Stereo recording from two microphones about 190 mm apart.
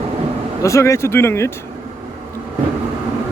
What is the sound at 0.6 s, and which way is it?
Speech, 15° left (ahead or behind).